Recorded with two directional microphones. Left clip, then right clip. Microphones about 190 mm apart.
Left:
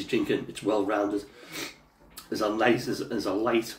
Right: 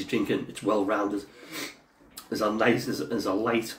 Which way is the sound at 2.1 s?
20° right (ahead or behind).